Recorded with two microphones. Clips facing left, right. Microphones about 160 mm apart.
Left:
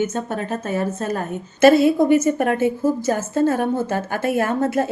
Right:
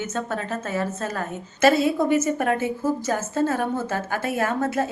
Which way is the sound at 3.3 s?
35° left (ahead or behind).